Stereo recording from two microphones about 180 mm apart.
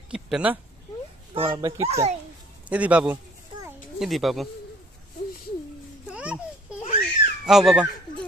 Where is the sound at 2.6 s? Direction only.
10° right (ahead or behind).